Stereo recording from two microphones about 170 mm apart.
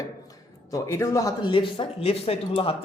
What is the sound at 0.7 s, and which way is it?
Speech, 20° left (ahead or behind).